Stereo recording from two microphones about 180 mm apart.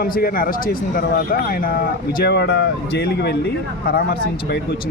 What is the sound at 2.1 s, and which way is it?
Speech, 65° left (ahead or behind).